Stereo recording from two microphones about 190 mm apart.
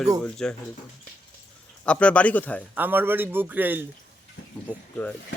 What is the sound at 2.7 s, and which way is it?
A man's voice, 10° right (ahead or behind).